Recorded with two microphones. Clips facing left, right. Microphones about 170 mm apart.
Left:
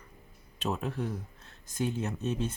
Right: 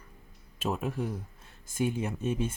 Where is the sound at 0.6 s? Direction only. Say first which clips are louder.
Right 1 dB; 10° right (ahead or behind).